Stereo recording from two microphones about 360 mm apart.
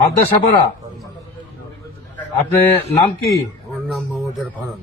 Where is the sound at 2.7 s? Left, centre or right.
Centre.